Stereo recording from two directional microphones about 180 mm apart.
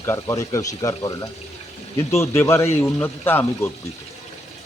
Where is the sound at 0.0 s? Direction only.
15° left (ahead or behind).